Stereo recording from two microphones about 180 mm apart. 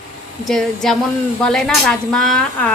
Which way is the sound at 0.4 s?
Centre (ahead or behind).